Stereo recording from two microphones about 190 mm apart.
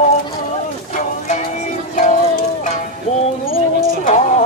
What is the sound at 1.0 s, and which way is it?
Music, 40° left (ahead or behind).